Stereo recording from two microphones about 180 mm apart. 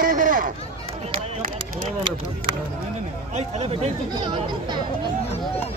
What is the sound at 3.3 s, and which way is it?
Speech, 35° right (ahead or behind).